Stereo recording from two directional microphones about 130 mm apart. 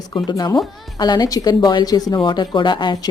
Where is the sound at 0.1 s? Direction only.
30° left (ahead or behind).